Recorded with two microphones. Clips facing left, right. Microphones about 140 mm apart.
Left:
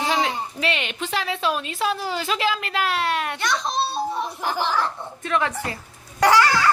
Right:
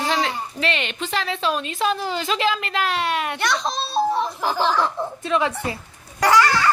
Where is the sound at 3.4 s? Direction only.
80° right.